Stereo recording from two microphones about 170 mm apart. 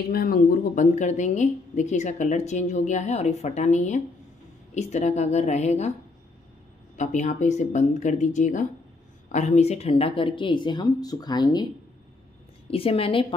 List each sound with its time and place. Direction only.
0.1 s a woman's voice: 60° left (ahead or behind); by 5.9 s 40° left (ahead or behind)
7.0 s a woman's voice: 45° left (ahead or behind); by 11.6 s 25° left (ahead or behind)
12.6 s a woman's voice: 35° left (ahead or behind)